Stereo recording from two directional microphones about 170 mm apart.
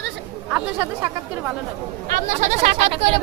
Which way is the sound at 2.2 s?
40° right (ahead or behind).